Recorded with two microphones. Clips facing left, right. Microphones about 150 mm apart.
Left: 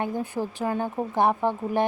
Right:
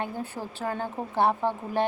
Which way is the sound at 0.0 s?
15° left (ahead or behind).